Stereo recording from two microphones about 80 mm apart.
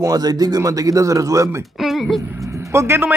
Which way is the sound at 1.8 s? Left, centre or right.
Centre.